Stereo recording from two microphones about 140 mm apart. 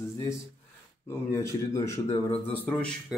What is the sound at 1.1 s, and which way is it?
Speech, 20° left (ahead or behind).